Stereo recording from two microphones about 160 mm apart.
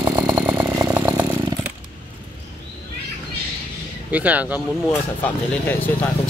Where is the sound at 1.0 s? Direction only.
10° right (ahead or behind).